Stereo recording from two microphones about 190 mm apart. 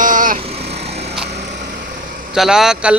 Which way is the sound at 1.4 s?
65° right (ahead or behind).